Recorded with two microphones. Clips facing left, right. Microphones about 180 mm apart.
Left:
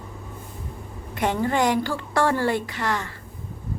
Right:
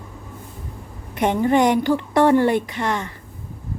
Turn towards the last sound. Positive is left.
turn(degrees=-20)  # may be behind; listen again after turning